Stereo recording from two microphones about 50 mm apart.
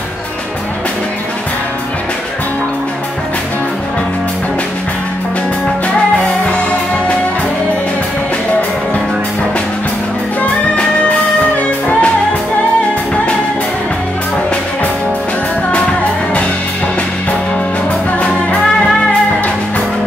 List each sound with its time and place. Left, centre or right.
11.5 s music: left
15.7 s music: left